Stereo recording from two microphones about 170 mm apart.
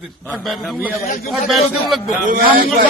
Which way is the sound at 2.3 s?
55° right (ahead or behind).